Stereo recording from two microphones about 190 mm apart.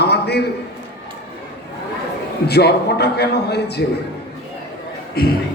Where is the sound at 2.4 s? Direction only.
60° left (ahead or behind).